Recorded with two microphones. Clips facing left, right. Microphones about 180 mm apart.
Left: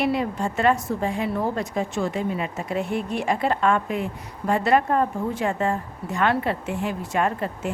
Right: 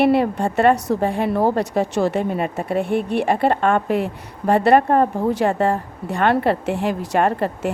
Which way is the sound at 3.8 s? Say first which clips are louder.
Right 6 dB; 65° right (ahead or behind).